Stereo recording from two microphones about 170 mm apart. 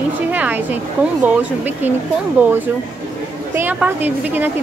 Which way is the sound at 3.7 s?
10° right (ahead or behind).